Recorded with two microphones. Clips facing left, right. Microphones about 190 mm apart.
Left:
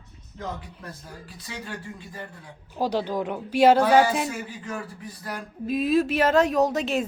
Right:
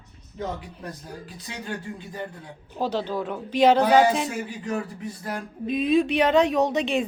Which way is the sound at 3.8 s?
20° right (ahead or behind).